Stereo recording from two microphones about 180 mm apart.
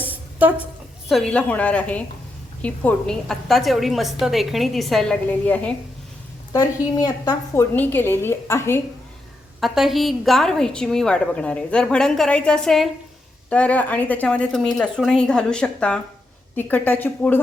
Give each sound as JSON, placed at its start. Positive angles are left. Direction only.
{"t": 0.3, "sound": "a woman's voice", "side_deg": -10}
{"t": 1.0, "sound": "a woman's voice", "side_deg": 0}
{"t": 6.5, "sound": "a woman's voice", "side_deg": 20}
{"t": 9.6, "sound": "a woman's voice", "side_deg": 0}